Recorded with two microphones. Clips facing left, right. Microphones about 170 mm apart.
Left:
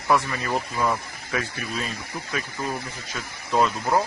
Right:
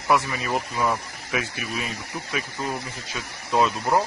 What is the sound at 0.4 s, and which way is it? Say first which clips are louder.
Speech: even; 15° right (ahead or behind).